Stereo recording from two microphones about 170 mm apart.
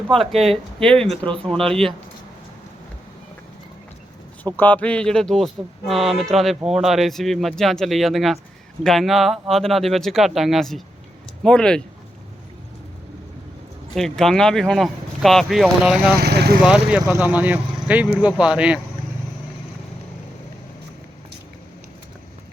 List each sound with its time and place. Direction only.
0.1 s speech: centre (ahead or behind)
4.5 s speech: 10° left (ahead or behind)
13.9 s speech: centre (ahead or behind)
16.1 s speech: 70° right (ahead or behind)
16.6 s speech: 5° right (ahead or behind)